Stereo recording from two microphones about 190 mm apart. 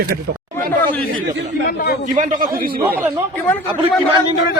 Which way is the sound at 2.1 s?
40° right (ahead or behind).